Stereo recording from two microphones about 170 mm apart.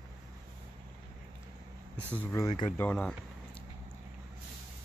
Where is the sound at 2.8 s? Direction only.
5° left (ahead or behind).